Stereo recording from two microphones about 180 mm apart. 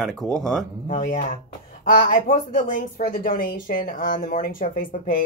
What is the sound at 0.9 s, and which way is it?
Speech, 45° left (ahead or behind).